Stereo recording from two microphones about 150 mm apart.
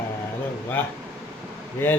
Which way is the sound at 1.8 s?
15° left (ahead or behind).